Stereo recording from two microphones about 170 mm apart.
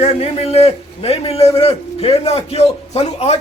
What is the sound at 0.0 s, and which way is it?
A man's voice, 35° left (ahead or behind).